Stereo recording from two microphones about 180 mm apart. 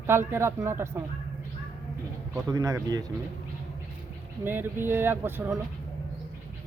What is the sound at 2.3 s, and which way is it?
Speech, 20° right (ahead or behind).